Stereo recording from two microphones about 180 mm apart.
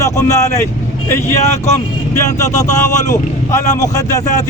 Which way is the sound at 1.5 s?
40° left (ahead or behind).